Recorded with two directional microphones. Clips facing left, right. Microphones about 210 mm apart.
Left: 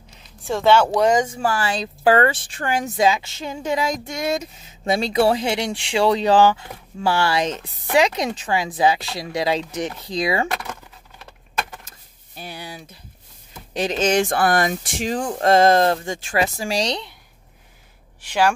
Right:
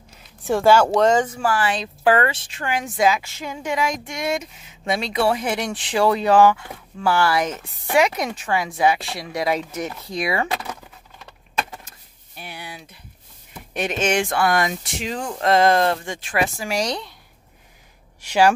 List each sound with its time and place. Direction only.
0.4 s speech: 15° right (ahead or behind)
0.9 s speech: 15° left (ahead or behind)
1.3 s speech: 25° left (ahead or behind)
2.3 s speech: 50° left (ahead or behind)
2.7 s speech: 30° left (ahead or behind)
12.4 s a sound: 35° left (ahead or behind)
13.7 s speech: 35° left (ahead or behind)
14.8 s speech: 50° left (ahead or behind)
15.1 s speech: 30° left (ahead or behind)
15.4 s speech: 40° left (ahead or behind)
16.3 s speech: 25° left (ahead or behind)
18.2 s speech: 10° right (ahead or behind)